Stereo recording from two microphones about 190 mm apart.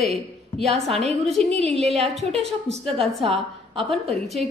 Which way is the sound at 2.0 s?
Centre (ahead or behind).